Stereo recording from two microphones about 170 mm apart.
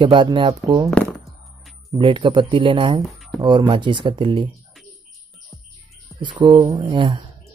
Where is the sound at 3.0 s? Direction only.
Centre (ahead or behind).